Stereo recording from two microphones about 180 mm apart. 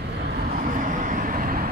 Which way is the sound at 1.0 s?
50° right (ahead or behind).